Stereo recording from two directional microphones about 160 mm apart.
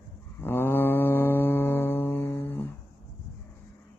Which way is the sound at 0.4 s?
15° left (ahead or behind).